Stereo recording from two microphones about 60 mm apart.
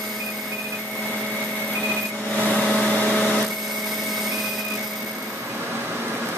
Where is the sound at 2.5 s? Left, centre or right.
Left.